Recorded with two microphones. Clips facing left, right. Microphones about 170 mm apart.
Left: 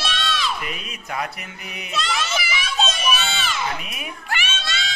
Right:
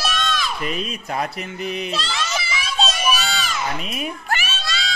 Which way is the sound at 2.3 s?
30° right (ahead or behind).